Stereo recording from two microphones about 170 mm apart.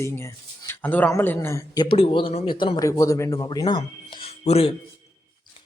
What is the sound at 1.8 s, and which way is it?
Speech, 30° left (ahead or behind).